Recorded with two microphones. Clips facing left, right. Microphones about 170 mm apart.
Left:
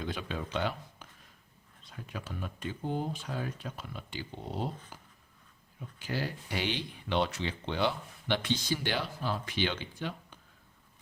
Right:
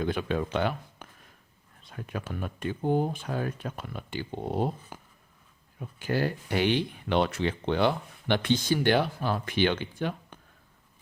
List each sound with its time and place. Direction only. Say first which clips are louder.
0.0 s speech: right 8 dB; 55° right (ahead or behind)
4.9 s writing: right 5 dB; 55° right (ahead or behind)
6.0 s speech: right 7 dB; 55° right (ahead or behind)